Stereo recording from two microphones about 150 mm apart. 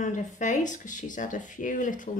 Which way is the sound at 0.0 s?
55° left (ahead or behind).